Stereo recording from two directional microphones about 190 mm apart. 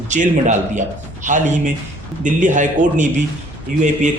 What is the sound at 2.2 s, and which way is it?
Speech, 40° right (ahead or behind).